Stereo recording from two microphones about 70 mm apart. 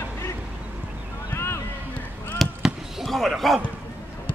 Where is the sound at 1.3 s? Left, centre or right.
Left.